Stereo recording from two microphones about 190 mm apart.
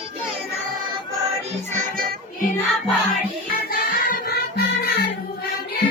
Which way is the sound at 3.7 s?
50° left (ahead or behind).